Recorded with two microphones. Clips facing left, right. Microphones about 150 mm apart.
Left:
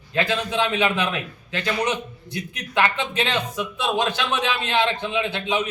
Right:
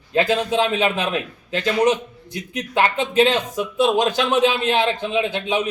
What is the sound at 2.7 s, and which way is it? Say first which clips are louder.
Speech: right 4 dB; 40° right (ahead or behind).